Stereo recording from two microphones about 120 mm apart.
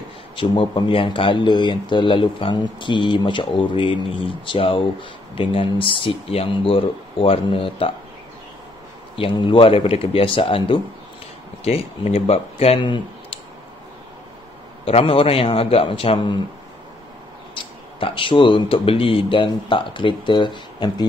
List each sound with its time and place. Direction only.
0.4 s speech: 45° left (ahead or behind)
9.1 s speech: 45° left (ahead or behind)
14.9 s speech: 50° left (ahead or behind)
17.9 s speech: 45° left (ahead or behind)